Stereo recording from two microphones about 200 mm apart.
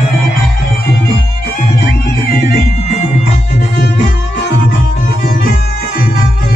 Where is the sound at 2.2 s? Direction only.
50° left (ahead or behind).